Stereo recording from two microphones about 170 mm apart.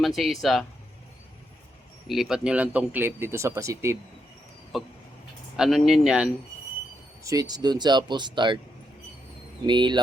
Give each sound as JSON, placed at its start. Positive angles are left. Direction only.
{"t": 0.0, "sound": "speech", "side_deg": 0}
{"t": 2.0, "sound": "speech", "side_deg": 0}
{"t": 4.7, "sound": "speech", "side_deg": 0}
{"t": 7.3, "sound": "speech", "side_deg": -20}
{"t": 9.6, "sound": "speech", "side_deg": -25}